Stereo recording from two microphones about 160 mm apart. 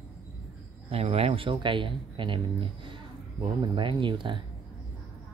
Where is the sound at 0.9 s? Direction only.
40° right (ahead or behind).